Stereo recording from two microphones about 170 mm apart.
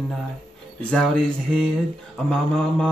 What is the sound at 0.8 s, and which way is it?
Speech, 5° left (ahead or behind).